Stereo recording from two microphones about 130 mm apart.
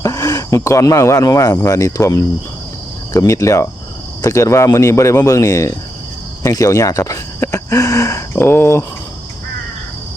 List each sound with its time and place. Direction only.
0.0 s speech: 25° left (ahead or behind)